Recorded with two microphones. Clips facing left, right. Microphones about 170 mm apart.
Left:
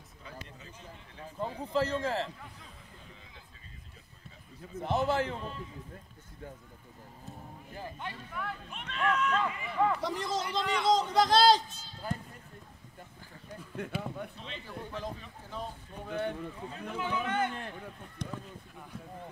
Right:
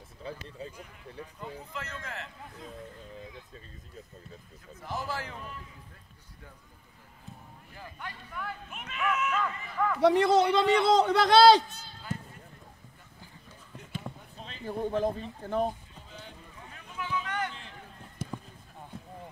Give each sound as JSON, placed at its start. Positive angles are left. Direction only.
{"t": 0.2, "sound": "a sound", "side_deg": -30}
{"t": 1.4, "sound": "a man's voice", "side_deg": 35}
{"t": 4.7, "sound": "a man's voice", "side_deg": 25}
{"t": 7.7, "sound": "speech", "side_deg": 30}
{"t": 8.3, "sound": "speech", "side_deg": 0}
{"t": 10.0, "sound": "a man's voice", "side_deg": -65}
{"t": 13.7, "sound": "basketball bounce", "side_deg": 65}
{"t": 14.4, "sound": "a man's voice", "side_deg": -45}
{"t": 16.0, "sound": "speech", "side_deg": 60}
{"t": 18.2, "sound": "run", "side_deg": -5}